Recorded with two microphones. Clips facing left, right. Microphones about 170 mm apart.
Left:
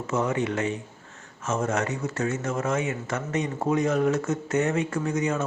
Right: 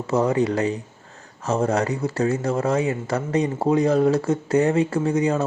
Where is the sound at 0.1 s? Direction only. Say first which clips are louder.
Right 6 dB; 35° right (ahead or behind).